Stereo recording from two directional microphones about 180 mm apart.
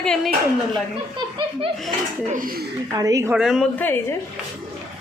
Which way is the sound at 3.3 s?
Centre (ahead or behind).